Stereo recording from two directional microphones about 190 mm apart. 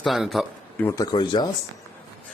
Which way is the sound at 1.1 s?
25° left (ahead or behind).